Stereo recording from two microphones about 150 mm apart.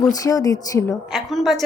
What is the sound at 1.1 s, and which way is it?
Speech, centre (ahead or behind).